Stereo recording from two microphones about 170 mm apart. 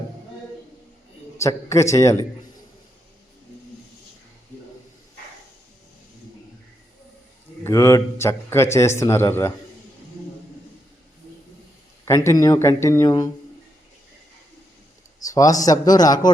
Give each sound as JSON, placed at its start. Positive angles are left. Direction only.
{"t": 1.4, "sound": "a man's voice", "side_deg": 15}
{"t": 7.6, "sound": "a man's voice", "side_deg": 15}
{"t": 12.0, "sound": "a man's voice", "side_deg": 15}
{"t": 15.2, "sound": "a man's voice", "side_deg": 20}